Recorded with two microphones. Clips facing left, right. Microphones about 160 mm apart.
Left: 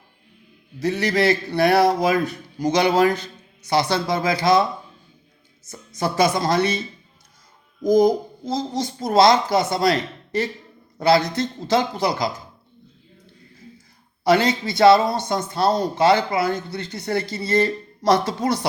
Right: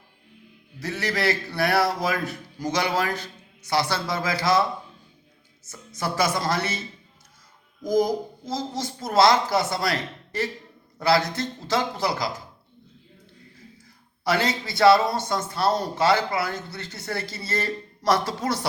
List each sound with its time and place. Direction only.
0.8 s a man's voice: 20° left (ahead or behind)
6.0 s a man's voice: 20° left (ahead or behind)
7.9 s a man's voice: 20° left (ahead or behind)
14.3 s a man's voice: 20° left (ahead or behind)